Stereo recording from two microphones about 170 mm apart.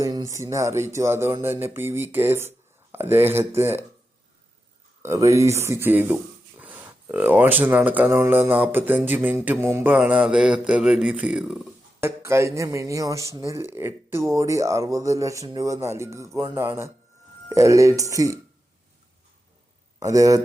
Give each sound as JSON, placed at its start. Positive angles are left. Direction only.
{"t": 0.0, "sound": "speech", "side_deg": -20}
{"t": 5.0, "sound": "speech", "side_deg": -15}
{"t": 11.9, "sound": "speech", "side_deg": -15}
{"t": 20.0, "sound": "speech", "side_deg": -20}